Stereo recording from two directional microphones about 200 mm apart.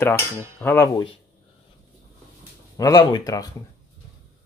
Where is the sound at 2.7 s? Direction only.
20° left (ahead or behind).